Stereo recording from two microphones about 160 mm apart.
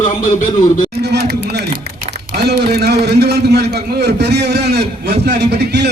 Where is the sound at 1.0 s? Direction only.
90° right.